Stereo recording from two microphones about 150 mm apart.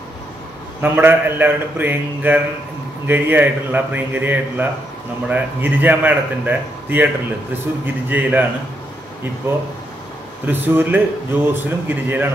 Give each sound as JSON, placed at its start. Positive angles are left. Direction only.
{"t": 0.7, "sound": "a man's voice", "side_deg": -15}